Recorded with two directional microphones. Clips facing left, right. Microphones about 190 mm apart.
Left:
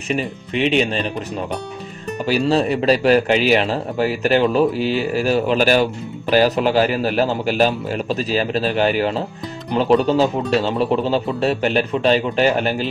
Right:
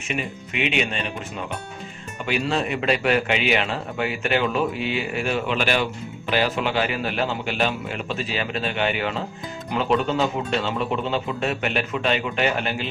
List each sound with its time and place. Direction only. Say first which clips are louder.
0.1 s a man's voice: left 7 dB; 35° left (ahead or behind)
2.2 s a man's voice: left 7 dB; 35° left (ahead or behind)